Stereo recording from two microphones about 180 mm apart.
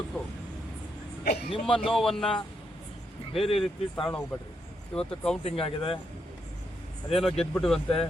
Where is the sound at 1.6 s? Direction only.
Centre (ahead or behind).